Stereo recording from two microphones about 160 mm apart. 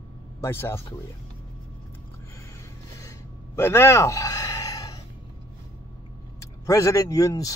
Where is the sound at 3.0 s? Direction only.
20° left (ahead or behind).